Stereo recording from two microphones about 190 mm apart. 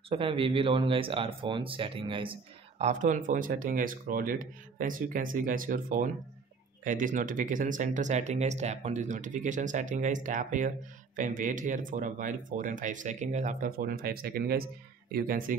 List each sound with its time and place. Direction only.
0.1 s speech: 30° right (ahead or behind)
2.8 s speech: 40° right (ahead or behind)